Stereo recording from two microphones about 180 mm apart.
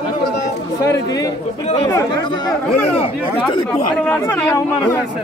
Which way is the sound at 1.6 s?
35° left (ahead or behind).